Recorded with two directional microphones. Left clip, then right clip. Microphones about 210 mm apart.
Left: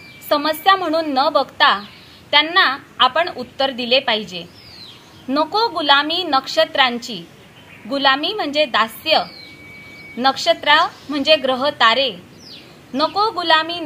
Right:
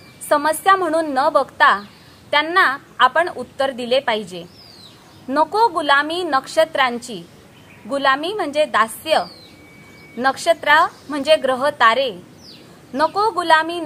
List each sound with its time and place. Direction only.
0.3 s a woman's voice: 15° right (ahead or behind)